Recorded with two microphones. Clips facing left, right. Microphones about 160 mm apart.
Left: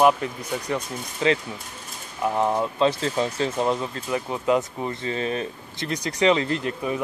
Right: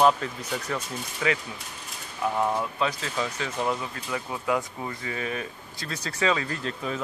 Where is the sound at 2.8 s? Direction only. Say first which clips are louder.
Left 7 dB; 30° left (ahead or behind).